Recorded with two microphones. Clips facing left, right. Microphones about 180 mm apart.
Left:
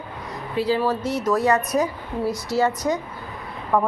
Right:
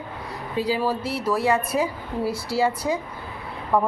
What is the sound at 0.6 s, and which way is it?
Speech, 10° right (ahead or behind).